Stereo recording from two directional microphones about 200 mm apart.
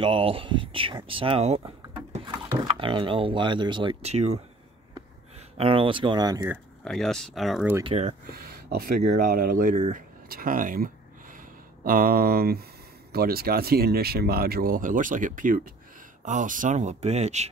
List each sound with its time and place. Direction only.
0.0 s speech: 25° right (ahead or behind)
2.8 s speech: 25° right (ahead or behind)
5.6 s speech: 25° right (ahead or behind)
6.8 s speech: 5° left (ahead or behind)
7.8 s speech: 30° right (ahead or behind)
8.3 s speech: 50° right (ahead or behind); by 17.5 s 35° right (ahead or behind)